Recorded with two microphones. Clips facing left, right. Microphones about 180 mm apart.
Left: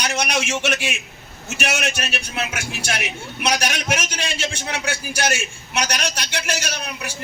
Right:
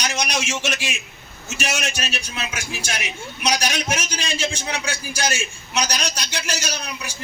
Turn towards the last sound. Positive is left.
turn(degrees=60)  # may be behind; listen again after turning